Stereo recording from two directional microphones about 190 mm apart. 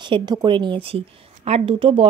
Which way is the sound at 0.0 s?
25° right (ahead or behind).